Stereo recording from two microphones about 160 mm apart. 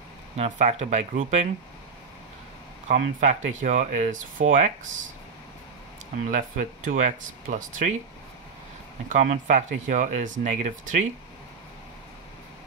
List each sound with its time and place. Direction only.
0.4 s speech: 40° right (ahead or behind)
2.9 s speech: 50° right (ahead or behind)
6.1 s speech: 55° right (ahead or behind)
9.1 s speech: 50° right (ahead or behind)